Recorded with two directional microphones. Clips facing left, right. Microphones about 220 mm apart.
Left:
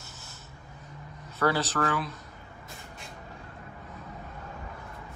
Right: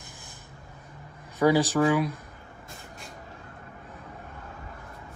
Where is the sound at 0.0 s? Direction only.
15° right (ahead or behind).